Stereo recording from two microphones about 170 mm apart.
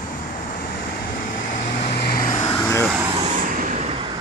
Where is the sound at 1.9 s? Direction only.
65° left (ahead or behind).